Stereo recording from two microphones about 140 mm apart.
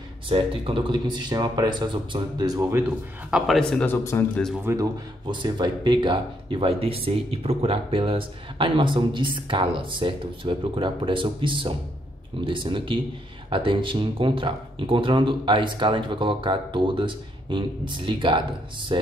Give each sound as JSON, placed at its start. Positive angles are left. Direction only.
{"t": 0.3, "sound": "speech", "side_deg": -40}
{"t": 3.3, "sound": "a man's voice", "side_deg": -5}
{"t": 3.8, "sound": "speech", "side_deg": 15}
{"t": 4.7, "sound": "speech", "side_deg": -20}
{"t": 5.2, "sound": "speech", "side_deg": -35}